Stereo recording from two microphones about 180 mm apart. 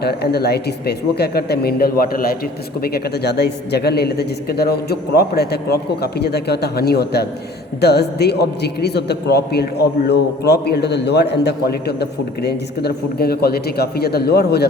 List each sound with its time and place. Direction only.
0.0 s a man's voice: 65° left (ahead or behind)